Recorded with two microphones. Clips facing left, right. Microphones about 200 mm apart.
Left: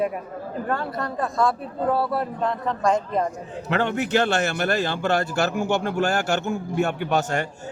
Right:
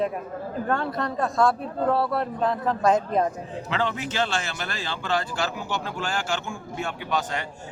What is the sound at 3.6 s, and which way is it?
A man's voice, 55° left (ahead or behind).